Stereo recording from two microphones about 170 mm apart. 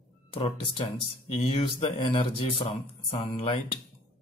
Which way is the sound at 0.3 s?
30° left (ahead or behind).